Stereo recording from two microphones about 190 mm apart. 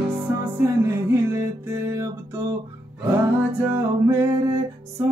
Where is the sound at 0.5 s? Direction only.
15° right (ahead or behind).